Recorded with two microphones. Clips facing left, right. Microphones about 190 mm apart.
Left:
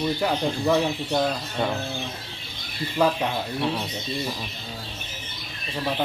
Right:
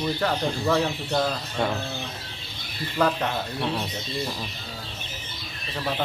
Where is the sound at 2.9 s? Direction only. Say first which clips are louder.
Left 1 dB; 10° left (ahead or behind).